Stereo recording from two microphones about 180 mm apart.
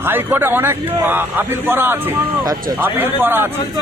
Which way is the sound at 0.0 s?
10° right (ahead or behind).